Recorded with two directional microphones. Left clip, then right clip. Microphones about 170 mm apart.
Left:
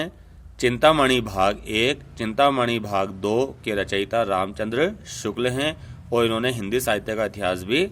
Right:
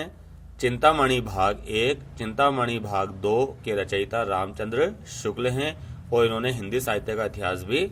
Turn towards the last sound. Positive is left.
turn(degrees=45)  # may be behind; listen again after turning